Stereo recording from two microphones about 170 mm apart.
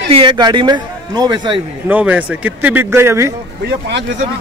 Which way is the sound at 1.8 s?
10° right (ahead or behind).